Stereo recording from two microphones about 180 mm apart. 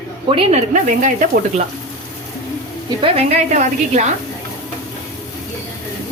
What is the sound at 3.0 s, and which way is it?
A woman's voice, 35° right (ahead or behind).